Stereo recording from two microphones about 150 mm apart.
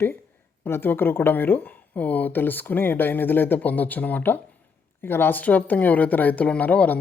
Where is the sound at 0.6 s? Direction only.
15° left (ahead or behind).